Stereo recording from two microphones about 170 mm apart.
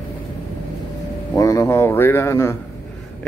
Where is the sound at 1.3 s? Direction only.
20° left (ahead or behind).